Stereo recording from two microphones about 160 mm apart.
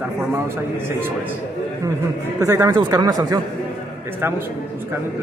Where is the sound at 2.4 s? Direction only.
20° right (ahead or behind).